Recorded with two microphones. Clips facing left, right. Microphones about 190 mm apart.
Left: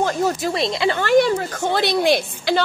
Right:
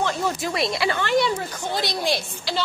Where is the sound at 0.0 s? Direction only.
40° left (ahead or behind).